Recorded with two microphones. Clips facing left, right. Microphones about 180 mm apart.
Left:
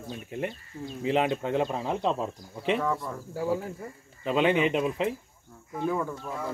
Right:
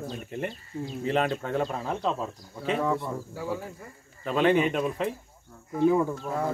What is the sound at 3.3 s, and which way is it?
Speech, 40° left (ahead or behind).